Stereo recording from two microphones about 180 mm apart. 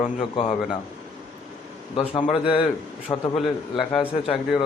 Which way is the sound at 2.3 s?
30° left (ahead or behind).